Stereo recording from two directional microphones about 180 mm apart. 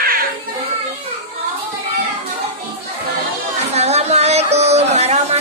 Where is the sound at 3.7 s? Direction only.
35° right (ahead or behind).